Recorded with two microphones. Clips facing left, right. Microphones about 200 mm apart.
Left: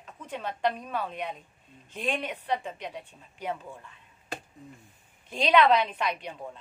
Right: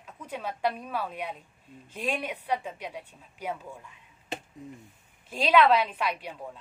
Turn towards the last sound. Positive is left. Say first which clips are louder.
# even
turn(degrees=0)  # may be behind; listen again after turning